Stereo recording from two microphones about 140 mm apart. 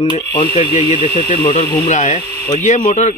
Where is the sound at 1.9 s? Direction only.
60° left (ahead or behind).